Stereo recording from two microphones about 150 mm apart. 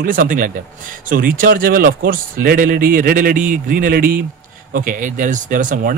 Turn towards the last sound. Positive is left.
turn(degrees=-60)  # may be behind; listen again after turning